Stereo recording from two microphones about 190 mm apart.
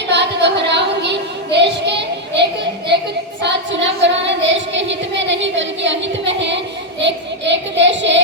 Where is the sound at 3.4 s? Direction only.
70° right (ahead or behind).